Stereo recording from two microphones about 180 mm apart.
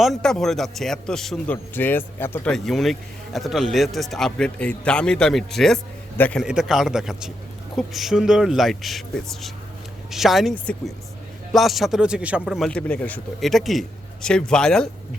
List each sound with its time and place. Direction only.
0.0 s a man's voice: centre (ahead or behind)